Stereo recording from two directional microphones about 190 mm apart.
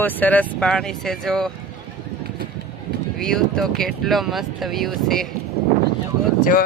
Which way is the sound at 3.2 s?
5° left (ahead or behind).